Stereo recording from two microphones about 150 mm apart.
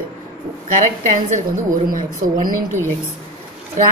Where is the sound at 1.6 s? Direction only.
65° right (ahead or behind).